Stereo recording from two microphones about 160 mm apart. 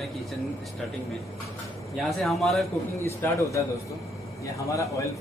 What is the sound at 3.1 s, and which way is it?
A man's voice, 20° left (ahead or behind).